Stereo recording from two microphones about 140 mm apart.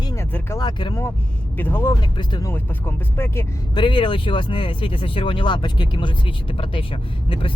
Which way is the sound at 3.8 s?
35° left (ahead or behind).